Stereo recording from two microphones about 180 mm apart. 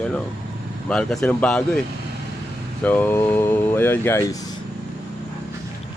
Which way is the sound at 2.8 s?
10° left (ahead or behind).